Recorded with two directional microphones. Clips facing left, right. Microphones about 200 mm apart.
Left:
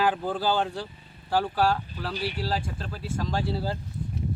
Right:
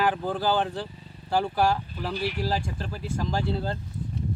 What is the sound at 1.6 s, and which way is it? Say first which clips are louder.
Speech: right 1 dB; 15° right (ahead or behind).